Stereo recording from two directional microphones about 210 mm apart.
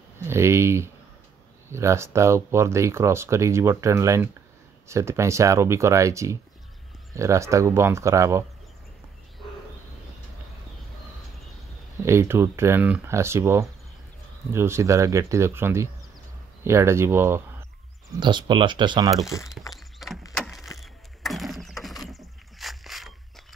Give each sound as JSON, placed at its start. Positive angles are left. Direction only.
{"t": 0.2, "sound": "speech", "side_deg": -10}
{"t": 12.0, "sound": "speech", "side_deg": -10}
{"t": 18.1, "sound": "speech", "side_deg": -20}
{"t": 19.2, "sound": "speech", "side_deg": 15}
{"t": 19.7, "sound": "a sound", "side_deg": 0}
{"t": 20.3, "sound": "wood", "side_deg": 5}
{"t": 20.8, "sound": "mechanisms", "side_deg": 0}